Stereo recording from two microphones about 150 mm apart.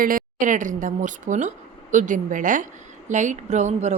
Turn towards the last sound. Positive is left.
turn(degrees=-50)  # may be behind; listen again after turning